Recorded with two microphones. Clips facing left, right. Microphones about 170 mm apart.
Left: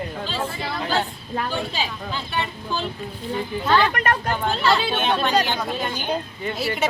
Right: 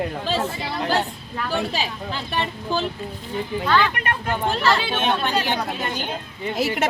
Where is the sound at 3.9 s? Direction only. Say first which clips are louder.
Left 3 dB; 40° left (ahead or behind).